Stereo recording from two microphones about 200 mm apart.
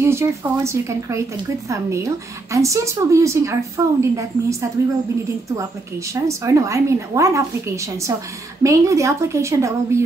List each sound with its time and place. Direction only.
0.0 s a woman's voice: 15° right (ahead or behind)
6.2 s a woman's voice: 15° right (ahead or behind)